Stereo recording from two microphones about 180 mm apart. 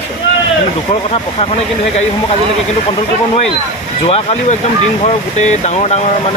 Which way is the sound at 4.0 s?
35° left (ahead or behind).